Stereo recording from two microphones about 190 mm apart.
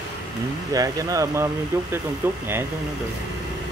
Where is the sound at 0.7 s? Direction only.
20° right (ahead or behind).